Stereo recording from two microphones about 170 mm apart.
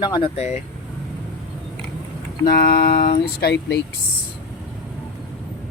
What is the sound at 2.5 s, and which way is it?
Speech, 60° left (ahead or behind).